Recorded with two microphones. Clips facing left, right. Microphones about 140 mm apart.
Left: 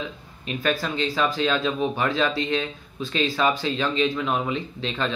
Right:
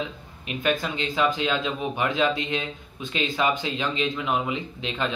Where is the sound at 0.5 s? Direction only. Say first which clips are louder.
Even; 15° right (ahead or behind).